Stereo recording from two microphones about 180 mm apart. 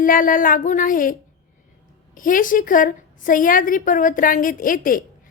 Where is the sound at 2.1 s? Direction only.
50° left (ahead or behind).